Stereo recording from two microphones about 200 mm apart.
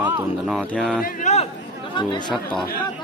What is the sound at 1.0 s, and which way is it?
Speech, 35° left (ahead or behind).